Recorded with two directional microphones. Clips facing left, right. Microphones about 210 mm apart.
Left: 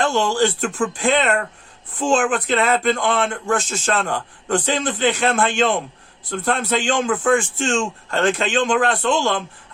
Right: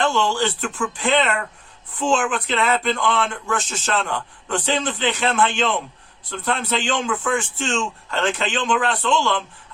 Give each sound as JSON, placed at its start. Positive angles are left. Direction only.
{"t": 0.1, "sound": "speech", "side_deg": 45}